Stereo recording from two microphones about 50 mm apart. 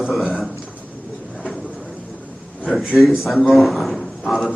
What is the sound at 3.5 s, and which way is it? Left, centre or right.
Speech, centre.